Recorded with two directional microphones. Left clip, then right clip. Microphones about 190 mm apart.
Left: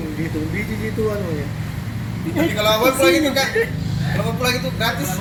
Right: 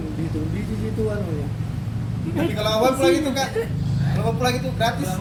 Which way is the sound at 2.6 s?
55° right (ahead or behind).